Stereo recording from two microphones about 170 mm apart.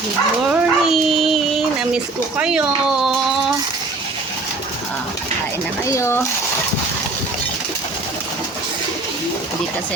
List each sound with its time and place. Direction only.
0.5 s a sound: centre (ahead or behind)
2.4 s speech: 5° right (ahead or behind)
5.9 s speech: 15° left (ahead or behind)